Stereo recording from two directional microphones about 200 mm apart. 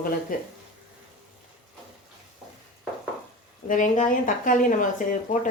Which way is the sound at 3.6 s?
40° left (ahead or behind).